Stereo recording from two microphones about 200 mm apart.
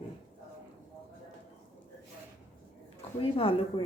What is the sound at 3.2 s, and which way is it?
Speech, 25° left (ahead or behind).